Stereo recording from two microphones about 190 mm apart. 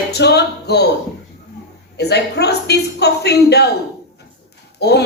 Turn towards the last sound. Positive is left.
turn(degrees=60)  # may be behind; listen again after turning